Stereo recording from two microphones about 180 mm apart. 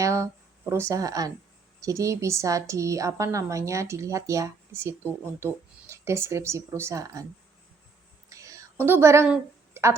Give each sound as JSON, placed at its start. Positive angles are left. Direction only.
{"t": 0.0, "sound": "a woman's voice", "side_deg": -15}
{"t": 8.3, "sound": "whispering", "side_deg": -20}